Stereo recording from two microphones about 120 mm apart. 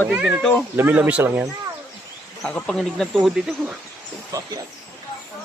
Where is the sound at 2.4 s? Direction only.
5° left (ahead or behind).